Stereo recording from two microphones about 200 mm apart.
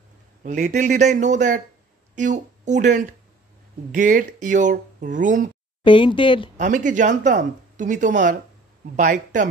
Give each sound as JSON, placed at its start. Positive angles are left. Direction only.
{"t": 0.4, "sound": "speech", "side_deg": -35}
{"t": 5.9, "sound": "speech", "side_deg": 25}
{"t": 6.5, "sound": "speech", "side_deg": -40}